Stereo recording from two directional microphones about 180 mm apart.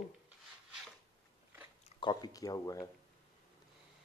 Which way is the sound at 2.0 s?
25° left (ahead or behind).